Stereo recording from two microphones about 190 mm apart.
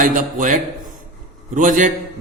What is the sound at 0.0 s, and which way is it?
A man's voice, 45° right (ahead or behind).